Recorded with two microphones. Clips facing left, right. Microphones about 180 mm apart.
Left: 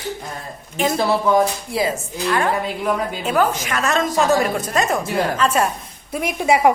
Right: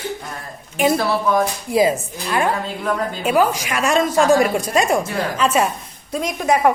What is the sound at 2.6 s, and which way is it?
Speech, 10° left (ahead or behind).